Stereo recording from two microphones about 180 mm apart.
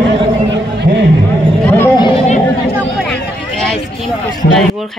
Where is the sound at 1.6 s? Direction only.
15° left (ahead or behind).